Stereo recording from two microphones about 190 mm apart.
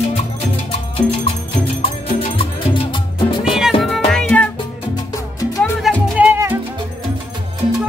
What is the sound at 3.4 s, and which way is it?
Music, 5° right (ahead or behind).